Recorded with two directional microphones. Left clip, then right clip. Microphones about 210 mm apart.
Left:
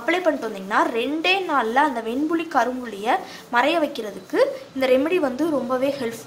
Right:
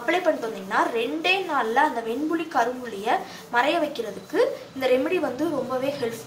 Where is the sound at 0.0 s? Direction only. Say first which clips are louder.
Left 2 dB; 50° left (ahead or behind).